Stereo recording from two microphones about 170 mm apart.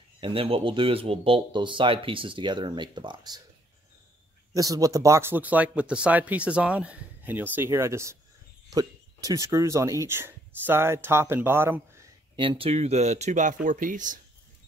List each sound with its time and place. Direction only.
0.2 s speech: 30° right (ahead or behind)
4.6 s speech: 20° right (ahead or behind)
12.4 s speech: 30° right (ahead or behind); by 14.2 s 50° right (ahead or behind)